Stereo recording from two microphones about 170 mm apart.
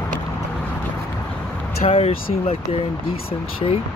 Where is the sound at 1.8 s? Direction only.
35° left (ahead or behind).